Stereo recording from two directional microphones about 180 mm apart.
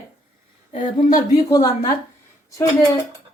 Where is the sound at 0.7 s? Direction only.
45° left (ahead or behind).